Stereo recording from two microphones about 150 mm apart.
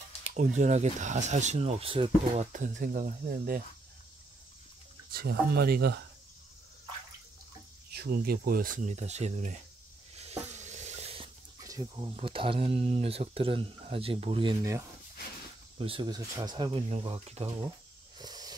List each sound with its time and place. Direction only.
0.6 s speech: 50° right (ahead or behind)
2.5 s speech: 60° right (ahead or behind)
5.1 s speech: 90° right
7.9 s speech: 85° right; by 9.6 s 50° right (ahead or behind)
10.1 s stir: 45° right (ahead or behind)
11.6 s speech: 25° right (ahead or behind)
14.6 s speech: 20° right (ahead or behind)
15.8 s speech: 35° right (ahead or behind)
18.1 s hiss: 25° right (ahead or behind)